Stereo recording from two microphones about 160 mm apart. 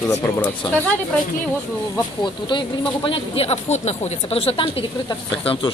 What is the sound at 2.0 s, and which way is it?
Speech, 30° left (ahead or behind).